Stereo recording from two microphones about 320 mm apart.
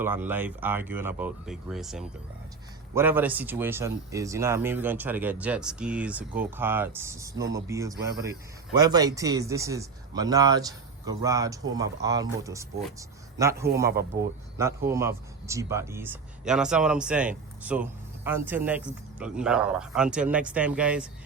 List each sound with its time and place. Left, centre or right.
0.0 s speech: centre
13.8 s speech: right
14.8 s speech: centre